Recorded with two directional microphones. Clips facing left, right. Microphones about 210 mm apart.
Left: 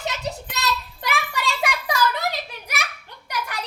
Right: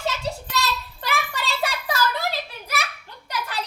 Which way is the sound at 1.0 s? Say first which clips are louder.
Left 1 dB; 15° left (ahead or behind).